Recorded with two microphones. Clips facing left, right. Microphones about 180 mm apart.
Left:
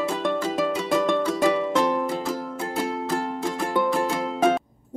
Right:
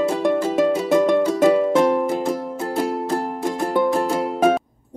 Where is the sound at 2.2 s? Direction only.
25° right (ahead or behind).